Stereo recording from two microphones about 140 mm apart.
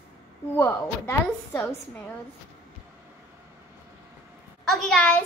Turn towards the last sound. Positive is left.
turn(degrees=10)  # may be behind; listen again after turning